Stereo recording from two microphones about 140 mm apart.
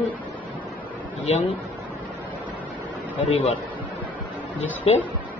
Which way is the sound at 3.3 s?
45° left (ahead or behind).